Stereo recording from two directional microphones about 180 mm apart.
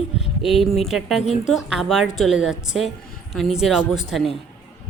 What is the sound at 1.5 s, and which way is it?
A woman's voice, centre (ahead or behind).